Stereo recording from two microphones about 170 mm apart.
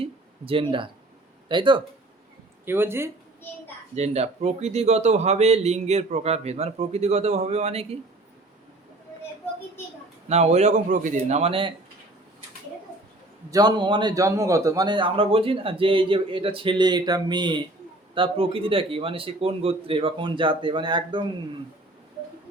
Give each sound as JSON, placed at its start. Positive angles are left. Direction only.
{"t": 0.0, "sound": "a sound", "side_deg": -30}
{"t": 1.5, "sound": "a man's voice", "side_deg": -30}
{"t": 2.6, "sound": "speech", "side_deg": -15}
{"t": 3.9, "sound": "a man's voice", "side_deg": -40}
{"t": 10.2, "sound": "a man's voice", "side_deg": -40}
{"t": 13.5, "sound": "a man's voice", "side_deg": -25}